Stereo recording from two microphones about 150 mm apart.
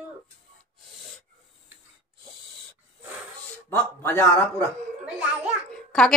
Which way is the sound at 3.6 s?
15° left (ahead or behind).